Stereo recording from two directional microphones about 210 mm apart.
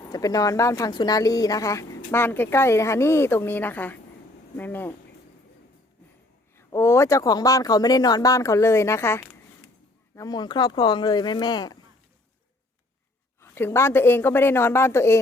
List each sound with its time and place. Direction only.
0.1 s speech: 15° left (ahead or behind)
6.6 s speech: 10° left (ahead or behind)
13.4 s speech: 10° left (ahead or behind)